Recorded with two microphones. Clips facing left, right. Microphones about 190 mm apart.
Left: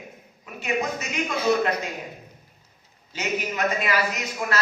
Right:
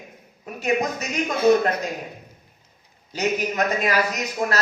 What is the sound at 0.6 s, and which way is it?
A man's voice, 40° right (ahead or behind).